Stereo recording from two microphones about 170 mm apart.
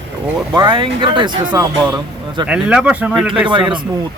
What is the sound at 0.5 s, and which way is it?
Speech, 25° right (ahead or behind).